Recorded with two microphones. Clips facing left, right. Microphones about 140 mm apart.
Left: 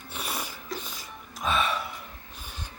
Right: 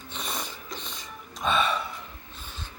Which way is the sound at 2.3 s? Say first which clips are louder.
Even; 15° left (ahead or behind).